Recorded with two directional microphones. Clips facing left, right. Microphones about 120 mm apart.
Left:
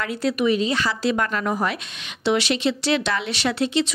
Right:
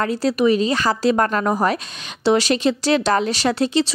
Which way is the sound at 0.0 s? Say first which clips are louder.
Right 4 dB; 35° right (ahead or behind).